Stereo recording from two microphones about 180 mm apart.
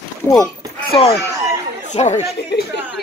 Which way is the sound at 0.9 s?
30° left (ahead or behind).